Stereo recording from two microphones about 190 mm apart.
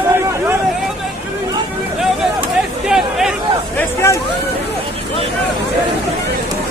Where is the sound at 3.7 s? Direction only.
15° left (ahead or behind).